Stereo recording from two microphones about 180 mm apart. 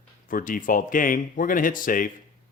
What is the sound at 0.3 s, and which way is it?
Speech, 50° left (ahead or behind).